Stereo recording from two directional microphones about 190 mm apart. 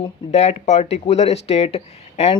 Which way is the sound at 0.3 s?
35° left (ahead or behind).